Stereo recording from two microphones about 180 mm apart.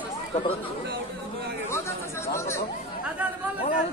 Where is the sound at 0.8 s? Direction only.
65° right (ahead or behind).